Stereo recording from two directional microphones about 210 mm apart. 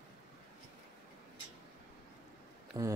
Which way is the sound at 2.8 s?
15° right (ahead or behind).